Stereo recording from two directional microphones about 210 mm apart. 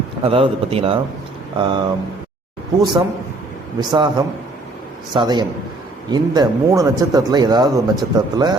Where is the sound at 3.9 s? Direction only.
20° right (ahead or behind).